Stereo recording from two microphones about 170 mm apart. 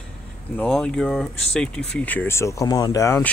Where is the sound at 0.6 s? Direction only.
5° left (ahead or behind).